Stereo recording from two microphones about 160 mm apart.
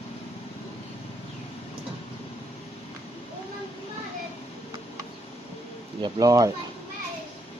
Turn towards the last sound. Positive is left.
turn(degrees=-20)  # may be behind; listen again after turning